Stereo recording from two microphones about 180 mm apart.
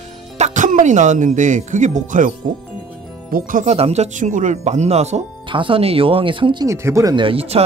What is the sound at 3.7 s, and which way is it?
Speech, 35° right (ahead or behind).